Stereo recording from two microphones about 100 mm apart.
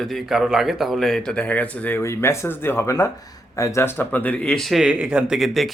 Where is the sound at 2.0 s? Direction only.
25° left (ahead or behind).